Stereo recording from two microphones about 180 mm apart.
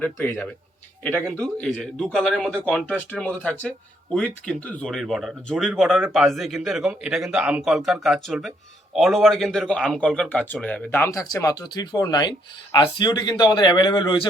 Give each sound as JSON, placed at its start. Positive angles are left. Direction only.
{"t": 0.0, "sound": "speech", "side_deg": 15}